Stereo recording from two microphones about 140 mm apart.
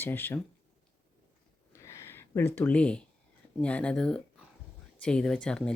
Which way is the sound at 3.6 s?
10° left (ahead or behind).